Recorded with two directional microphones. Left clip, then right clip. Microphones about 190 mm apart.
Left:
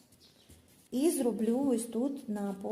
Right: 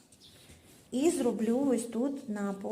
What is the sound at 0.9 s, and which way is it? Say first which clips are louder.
A woman's voice: right 1 dB; 5° left (ahead or behind).